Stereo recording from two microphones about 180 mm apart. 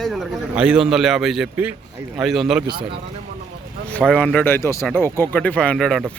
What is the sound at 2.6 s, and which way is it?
Speech, 25° right (ahead or behind).